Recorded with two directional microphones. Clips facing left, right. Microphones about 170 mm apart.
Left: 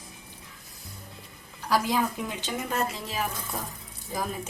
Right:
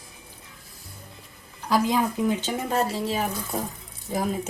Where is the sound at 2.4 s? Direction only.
30° right (ahead or behind).